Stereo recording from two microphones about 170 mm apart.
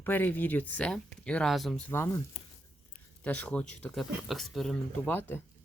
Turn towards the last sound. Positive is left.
turn(degrees=10)  # may be behind; listen again after turning